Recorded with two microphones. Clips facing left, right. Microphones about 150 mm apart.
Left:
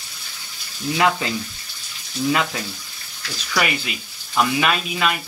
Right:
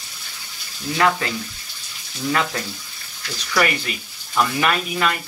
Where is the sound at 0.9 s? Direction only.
20° left (ahead or behind).